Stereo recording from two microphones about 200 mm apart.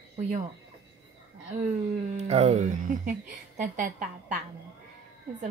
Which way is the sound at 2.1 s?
35° right (ahead or behind).